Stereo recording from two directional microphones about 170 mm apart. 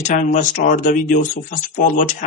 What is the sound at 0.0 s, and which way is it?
Speech, 45° left (ahead or behind).